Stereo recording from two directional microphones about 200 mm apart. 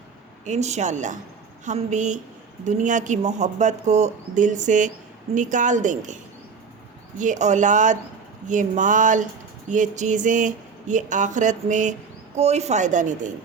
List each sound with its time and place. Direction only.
0.4 s speech: 35° right (ahead or behind)
7.2 s speech: 35° right (ahead or behind)